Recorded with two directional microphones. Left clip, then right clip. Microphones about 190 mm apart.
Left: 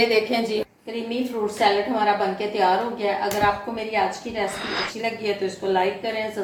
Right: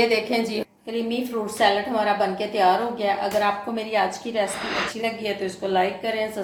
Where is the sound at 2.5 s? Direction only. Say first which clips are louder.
Right 1 dB; 55° right (ahead or behind).